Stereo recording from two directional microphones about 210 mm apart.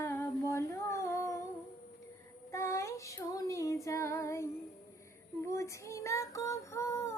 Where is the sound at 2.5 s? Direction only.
15° left (ahead or behind).